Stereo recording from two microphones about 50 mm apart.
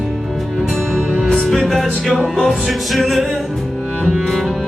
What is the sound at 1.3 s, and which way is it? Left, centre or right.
Music, centre.